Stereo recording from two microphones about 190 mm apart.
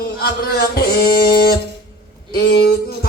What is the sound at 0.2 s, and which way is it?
Music, 55° left (ahead or behind).